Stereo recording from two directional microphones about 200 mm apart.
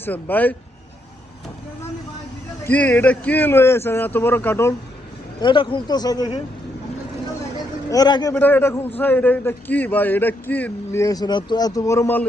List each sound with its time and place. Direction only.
0.0 s a man's voice: 10° left (ahead or behind)
2.6 s a man's voice: 10° left (ahead or behind)
5.4 s speech: 25° left (ahead or behind)
7.9 s a man's voice: 20° left (ahead or behind)